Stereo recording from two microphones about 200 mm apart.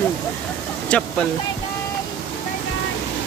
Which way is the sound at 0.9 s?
5° left (ahead or behind).